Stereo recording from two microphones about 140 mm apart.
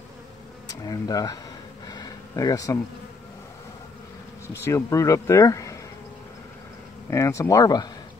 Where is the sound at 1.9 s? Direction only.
30° left (ahead or behind).